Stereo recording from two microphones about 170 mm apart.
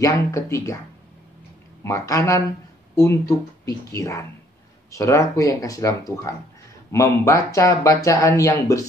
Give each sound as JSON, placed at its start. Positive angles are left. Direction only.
{"t": 0.0, "sound": "speech", "side_deg": 20}
{"t": 1.8, "sound": "speech", "side_deg": 20}